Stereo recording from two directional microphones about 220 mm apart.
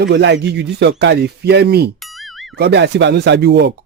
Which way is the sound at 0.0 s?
50° right (ahead or behind).